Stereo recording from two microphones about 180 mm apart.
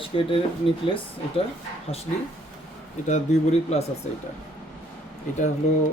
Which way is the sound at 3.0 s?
40° left (ahead or behind).